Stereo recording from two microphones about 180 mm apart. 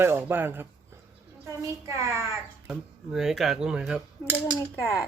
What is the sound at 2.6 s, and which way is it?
Speech, centre (ahead or behind).